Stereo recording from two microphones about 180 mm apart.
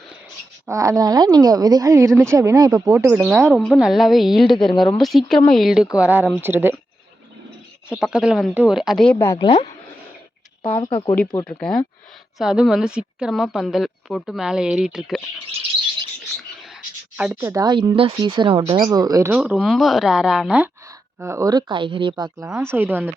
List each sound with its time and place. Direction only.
0.7 s a woman's voice: 15° right (ahead or behind)
3.6 s a woman's voice: centre (ahead or behind)
7.9 s a woman's voice: 5° right (ahead or behind)
9.1 s speech: 15° left (ahead or behind)
9.5 s speech: 30° left (ahead or behind)
11.4 s a woman's voice: 5° left (ahead or behind)
17.2 s a woman's voice: 5° right (ahead or behind)
17.5 s speech: 25° right (ahead or behind)
19.3 s a woman's voice: 5° right (ahead or behind)
21.2 s speech: 15° right (ahead or behind)
22.4 s a woman's voice: 10° right (ahead or behind)